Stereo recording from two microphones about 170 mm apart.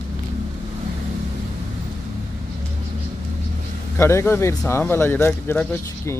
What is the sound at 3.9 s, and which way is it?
Speech, 15° left (ahead or behind).